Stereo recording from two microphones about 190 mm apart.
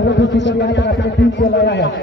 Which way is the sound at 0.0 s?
70° left (ahead or behind).